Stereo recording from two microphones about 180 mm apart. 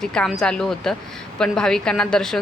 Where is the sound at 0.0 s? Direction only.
5° left (ahead or behind).